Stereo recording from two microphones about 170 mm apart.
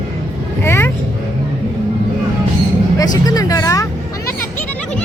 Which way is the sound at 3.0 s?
20° left (ahead or behind).